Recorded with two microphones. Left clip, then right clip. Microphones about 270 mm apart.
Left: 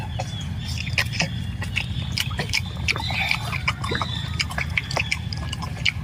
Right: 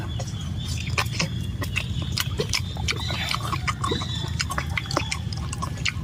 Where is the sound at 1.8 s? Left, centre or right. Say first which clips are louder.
Left 2 dB; centre.